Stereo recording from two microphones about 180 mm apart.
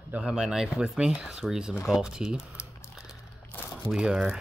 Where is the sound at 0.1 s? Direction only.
5° right (ahead or behind).